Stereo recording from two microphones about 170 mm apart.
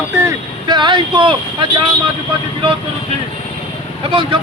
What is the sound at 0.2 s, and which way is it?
Speech, 20° right (ahead or behind).